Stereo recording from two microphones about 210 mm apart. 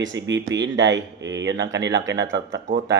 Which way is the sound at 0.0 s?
60° right (ahead or behind).